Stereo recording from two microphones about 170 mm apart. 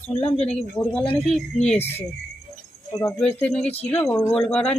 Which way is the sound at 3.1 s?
5° left (ahead or behind).